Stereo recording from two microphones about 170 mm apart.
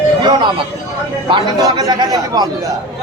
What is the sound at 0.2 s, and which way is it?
A man's voice, 25° right (ahead or behind).